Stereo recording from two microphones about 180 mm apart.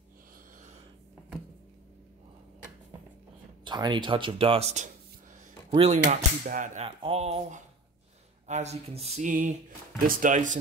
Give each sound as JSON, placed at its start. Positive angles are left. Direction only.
{"t": 3.6, "sound": "speech", "side_deg": -25}
{"t": 7.0, "sound": "speech", "side_deg": -30}